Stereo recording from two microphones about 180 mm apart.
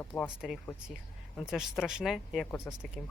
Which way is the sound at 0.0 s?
10° left (ahead or behind).